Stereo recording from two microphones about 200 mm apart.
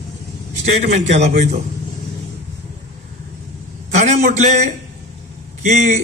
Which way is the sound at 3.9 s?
35° right (ahead or behind).